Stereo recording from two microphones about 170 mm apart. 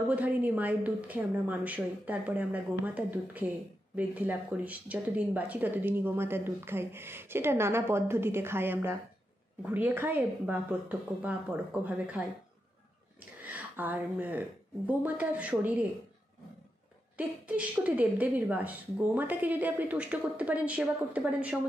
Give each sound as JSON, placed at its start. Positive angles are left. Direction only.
{"t": 0.1, "sound": "speech", "side_deg": -10}
{"t": 13.4, "sound": "speech", "side_deg": -10}
{"t": 17.2, "sound": "speech", "side_deg": -10}